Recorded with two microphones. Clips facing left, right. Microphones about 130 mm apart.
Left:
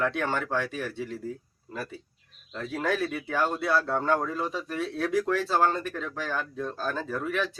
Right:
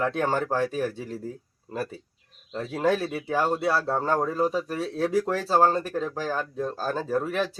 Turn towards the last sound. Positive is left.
turn(degrees=-35)  # may be behind; listen again after turning